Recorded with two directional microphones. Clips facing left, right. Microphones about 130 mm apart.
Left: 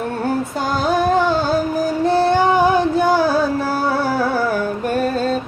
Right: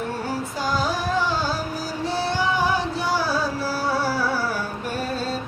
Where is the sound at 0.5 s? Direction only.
55° left (ahead or behind).